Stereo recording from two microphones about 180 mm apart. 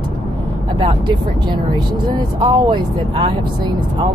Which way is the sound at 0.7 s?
25° right (ahead or behind).